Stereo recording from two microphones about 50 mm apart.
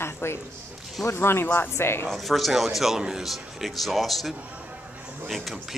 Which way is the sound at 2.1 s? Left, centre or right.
Centre.